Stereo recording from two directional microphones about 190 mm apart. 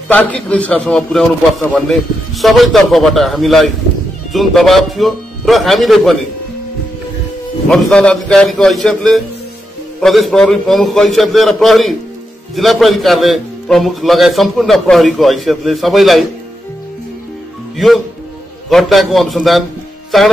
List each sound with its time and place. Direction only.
0.1 s a man's voice: 5° left (ahead or behind)
7.9 s a man's voice: 5° left (ahead or behind)
17.7 s a man's voice: centre (ahead or behind)